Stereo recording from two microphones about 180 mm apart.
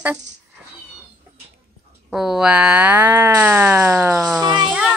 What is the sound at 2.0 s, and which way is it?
Speech, 5° right (ahead or behind).